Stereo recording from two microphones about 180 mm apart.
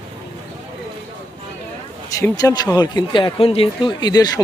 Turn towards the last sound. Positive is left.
turn(degrees=20)  # may be behind; listen again after turning